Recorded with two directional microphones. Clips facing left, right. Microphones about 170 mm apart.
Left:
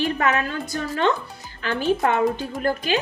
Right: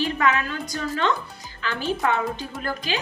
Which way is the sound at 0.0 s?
40° left (ahead or behind).